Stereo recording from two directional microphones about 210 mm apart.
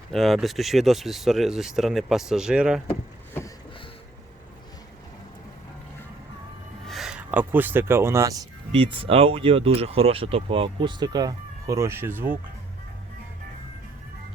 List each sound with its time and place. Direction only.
0.1 s speech: centre (ahead or behind)
6.8 s speech: centre (ahead or behind)
8.7 s speech: 25° right (ahead or behind); by 12.4 s 10° right (ahead or behind)